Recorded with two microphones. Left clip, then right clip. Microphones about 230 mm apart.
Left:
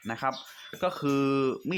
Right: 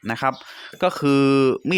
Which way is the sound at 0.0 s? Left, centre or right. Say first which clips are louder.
Right 8 dB; right.